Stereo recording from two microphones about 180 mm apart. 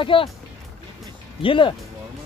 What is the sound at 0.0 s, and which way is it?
Speech, 30° left (ahead or behind).